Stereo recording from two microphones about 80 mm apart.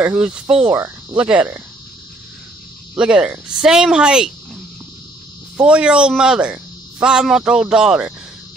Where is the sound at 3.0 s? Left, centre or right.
Centre.